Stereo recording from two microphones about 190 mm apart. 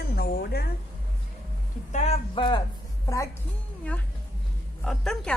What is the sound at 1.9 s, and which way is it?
Speech, 35° left (ahead or behind).